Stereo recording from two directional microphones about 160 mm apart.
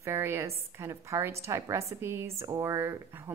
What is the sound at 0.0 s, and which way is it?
A woman's voice, 15° right (ahead or behind).